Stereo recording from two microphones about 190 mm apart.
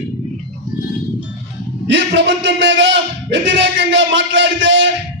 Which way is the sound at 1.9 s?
70° right (ahead or behind).